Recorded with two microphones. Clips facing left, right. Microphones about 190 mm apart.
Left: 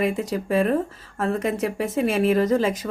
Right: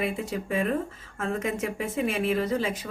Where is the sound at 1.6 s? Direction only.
40° left (ahead or behind).